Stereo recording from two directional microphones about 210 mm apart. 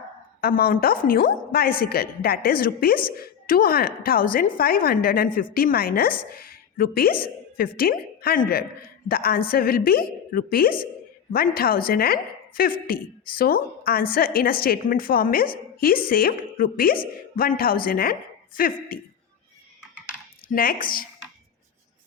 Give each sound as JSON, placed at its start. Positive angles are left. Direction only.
{"t": 0.4, "sound": "a woman's voice", "side_deg": 45}
{"t": 20.5, "sound": "a woman's voice", "side_deg": 45}